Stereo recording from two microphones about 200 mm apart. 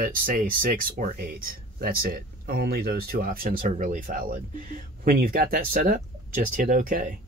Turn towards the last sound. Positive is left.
turn(degrees=-45)  # may be behind; listen again after turning